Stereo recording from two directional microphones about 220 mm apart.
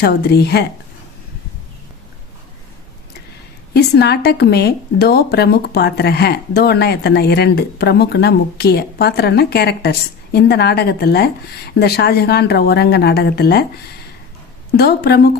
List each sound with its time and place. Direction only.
0.0 s a woman's voice: 45° left (ahead or behind)
3.8 s a woman's voice: 50° left (ahead or behind)
14.8 s a woman's voice: 45° left (ahead or behind)